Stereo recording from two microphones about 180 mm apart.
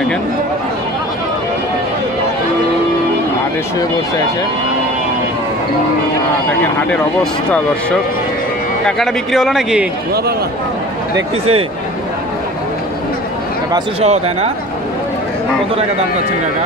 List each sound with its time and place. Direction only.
8.8 s a man's voice: centre (ahead or behind)
14.0 s speech: 35° right (ahead or behind)